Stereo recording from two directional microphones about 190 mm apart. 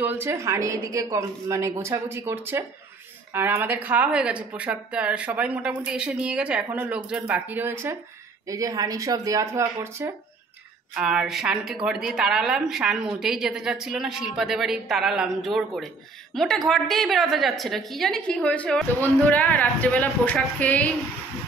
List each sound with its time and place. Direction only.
0.0 s a woman's voice: 10° right (ahead or behind)
11.0 s a woman's voice: 5° right (ahead or behind)